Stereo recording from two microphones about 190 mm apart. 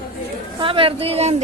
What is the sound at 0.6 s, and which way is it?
Speech, 30° right (ahead or behind).